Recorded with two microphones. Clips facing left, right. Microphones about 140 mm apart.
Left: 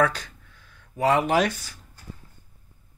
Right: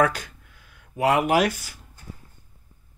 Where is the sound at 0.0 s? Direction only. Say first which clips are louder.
Right 1 dB; 10° right (ahead or behind).